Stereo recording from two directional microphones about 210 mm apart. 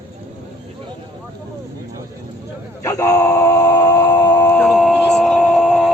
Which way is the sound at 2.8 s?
15° left (ahead or behind).